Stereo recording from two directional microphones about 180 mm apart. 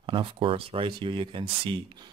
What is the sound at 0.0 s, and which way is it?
Speech, 30° right (ahead or behind).